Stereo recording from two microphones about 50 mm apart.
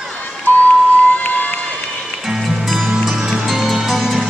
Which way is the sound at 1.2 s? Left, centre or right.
Left.